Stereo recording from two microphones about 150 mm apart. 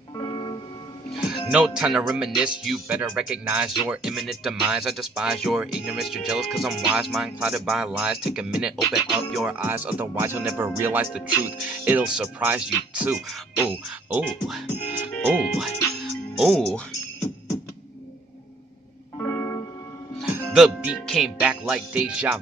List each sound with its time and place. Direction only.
0.2 s music: 30° left (ahead or behind)
1.1 s speech: 5° right (ahead or behind)
13.8 s music: 5° right (ahead or behind)
19.1 s music: 15° left (ahead or behind)
20.2 s music: 15° right (ahead or behind)
20.5 s speech: 5° right (ahead or behind)